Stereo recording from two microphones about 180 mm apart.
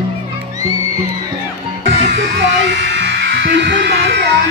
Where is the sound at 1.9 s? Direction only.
85° right.